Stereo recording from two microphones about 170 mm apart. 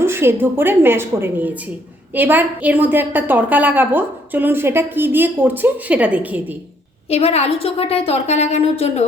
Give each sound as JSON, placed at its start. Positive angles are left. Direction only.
{"t": 0.0, "sound": "a woman's voice", "side_deg": -15}
{"t": 7.1, "sound": "a woman's voice", "side_deg": 35}